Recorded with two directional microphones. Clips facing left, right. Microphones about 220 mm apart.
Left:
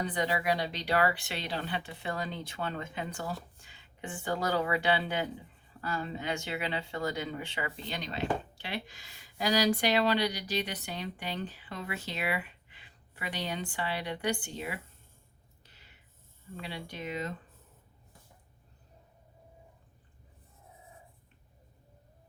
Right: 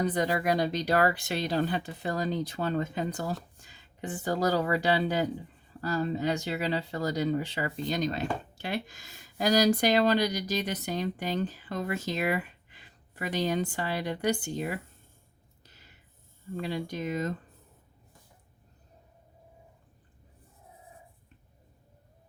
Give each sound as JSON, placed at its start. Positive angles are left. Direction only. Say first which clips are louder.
{"t": 0.0, "sound": "speech", "louder": "right 4 dB", "side_deg": -40}
{"t": 15.6, "sound": "a sound", "louder": "right 4 dB", "side_deg": -40}
{"t": 16.6, "sound": "speech", "louder": "right 8 dB", "side_deg": -45}